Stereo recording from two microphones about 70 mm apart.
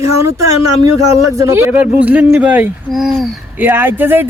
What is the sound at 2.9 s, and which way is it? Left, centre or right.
Speech, centre.